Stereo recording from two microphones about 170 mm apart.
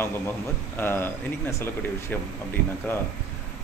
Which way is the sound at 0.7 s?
15° left (ahead or behind).